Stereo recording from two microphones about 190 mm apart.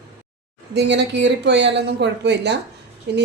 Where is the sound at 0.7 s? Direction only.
65° right (ahead or behind).